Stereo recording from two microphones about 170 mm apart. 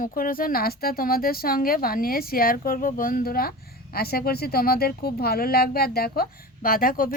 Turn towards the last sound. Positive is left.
turn(degrees=55)  # may be behind; listen again after turning